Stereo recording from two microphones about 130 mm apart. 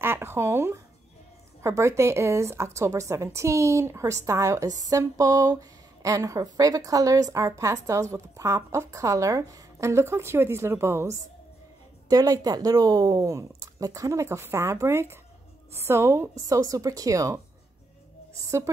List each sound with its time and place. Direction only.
0.0 s a woman's voice: 20° right (ahead or behind)